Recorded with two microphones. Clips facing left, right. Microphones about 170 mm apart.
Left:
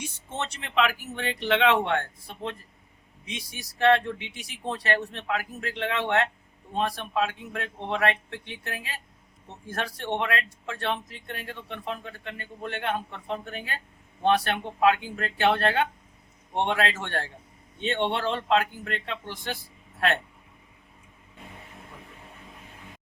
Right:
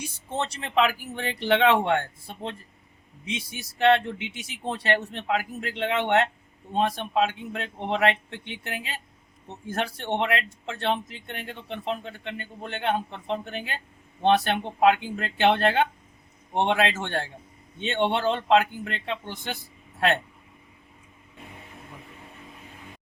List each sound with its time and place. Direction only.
0.3 s speech: 35° right (ahead or behind)